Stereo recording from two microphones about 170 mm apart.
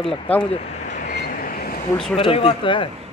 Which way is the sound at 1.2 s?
55° left (ahead or behind).